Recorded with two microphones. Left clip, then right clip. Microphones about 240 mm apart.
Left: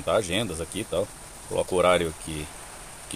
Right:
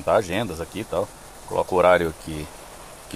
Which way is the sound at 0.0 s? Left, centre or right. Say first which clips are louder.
Right 4 dB; centre.